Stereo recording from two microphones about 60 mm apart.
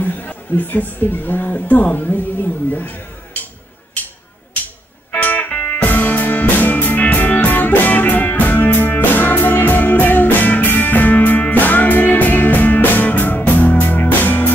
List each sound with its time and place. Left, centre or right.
0.0 s a woman's voice: left
5.1 s music: left